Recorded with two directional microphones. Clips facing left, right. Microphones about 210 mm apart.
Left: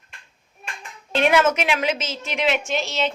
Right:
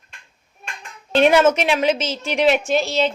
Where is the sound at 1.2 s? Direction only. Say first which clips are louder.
Right 4 dB; 30° right (ahead or behind).